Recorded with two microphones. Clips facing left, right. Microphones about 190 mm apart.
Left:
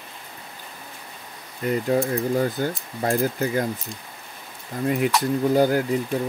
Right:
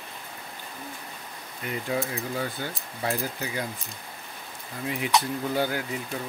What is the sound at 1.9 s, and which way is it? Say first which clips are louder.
Speech: left 7 dB; 45° left (ahead or behind).